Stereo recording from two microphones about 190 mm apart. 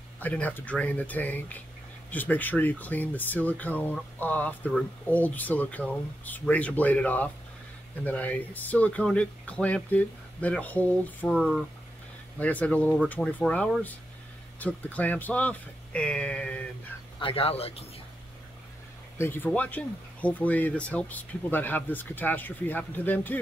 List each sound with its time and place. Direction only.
0.2 s speech: 10° left (ahead or behind)
11.3 s speech: centre (ahead or behind)
17.2 s speech: 30° left (ahead or behind)
19.1 s speech: 10° left (ahead or behind)